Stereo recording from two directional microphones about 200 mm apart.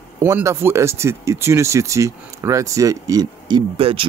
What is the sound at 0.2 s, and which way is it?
Speech, 15° right (ahead or behind).